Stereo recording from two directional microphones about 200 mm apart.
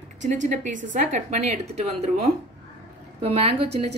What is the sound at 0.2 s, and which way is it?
Speech, 40° right (ahead or behind).